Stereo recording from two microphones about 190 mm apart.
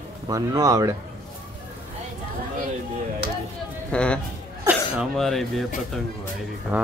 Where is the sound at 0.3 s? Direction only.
20° right (ahead or behind).